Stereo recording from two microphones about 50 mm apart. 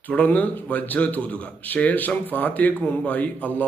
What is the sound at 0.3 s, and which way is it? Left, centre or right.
A man's voice, left.